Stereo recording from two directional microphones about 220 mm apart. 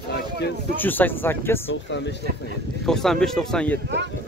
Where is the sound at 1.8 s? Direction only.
55° left (ahead or behind).